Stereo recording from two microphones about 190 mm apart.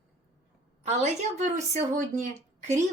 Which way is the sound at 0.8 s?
35° right (ahead or behind).